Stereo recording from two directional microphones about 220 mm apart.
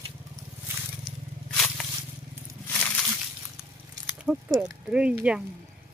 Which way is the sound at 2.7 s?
5° left (ahead or behind).